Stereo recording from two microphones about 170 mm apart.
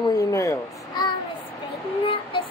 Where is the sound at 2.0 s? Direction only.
30° left (ahead or behind).